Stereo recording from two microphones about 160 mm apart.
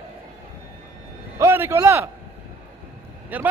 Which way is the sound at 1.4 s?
15° right (ahead or behind).